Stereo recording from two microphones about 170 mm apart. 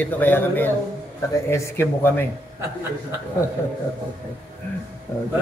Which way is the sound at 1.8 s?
15° left (ahead or behind).